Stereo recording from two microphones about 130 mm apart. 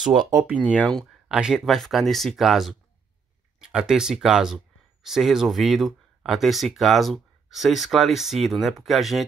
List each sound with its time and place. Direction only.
0.1 s speech: 30° right (ahead or behind)
0.7 s speech: 5° left (ahead or behind)
3.7 s speech: 5° right (ahead or behind)